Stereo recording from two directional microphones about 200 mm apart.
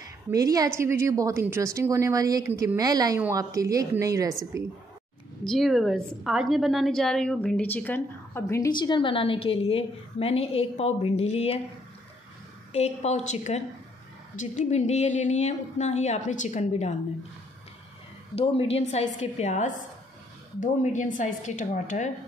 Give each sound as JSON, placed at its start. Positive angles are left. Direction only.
{"t": 0.3, "sound": "a woman's voice", "side_deg": -15}
{"t": 5.4, "sound": "a woman's voice", "side_deg": 0}
{"t": 12.7, "sound": "a woman's voice", "side_deg": 35}
{"t": 18.3, "sound": "a woman's voice", "side_deg": 30}